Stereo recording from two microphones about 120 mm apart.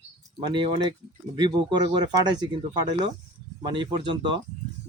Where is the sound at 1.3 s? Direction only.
35° right (ahead or behind).